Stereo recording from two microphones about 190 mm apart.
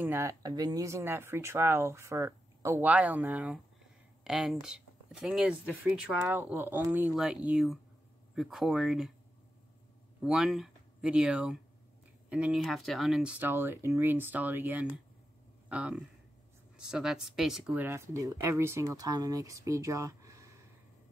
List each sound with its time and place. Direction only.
0.0 s speech: 15° right (ahead or behind)
10.2 s speech: centre (ahead or behind)